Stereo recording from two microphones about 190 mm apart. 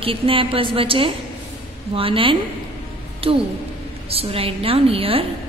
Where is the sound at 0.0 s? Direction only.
30° right (ahead or behind).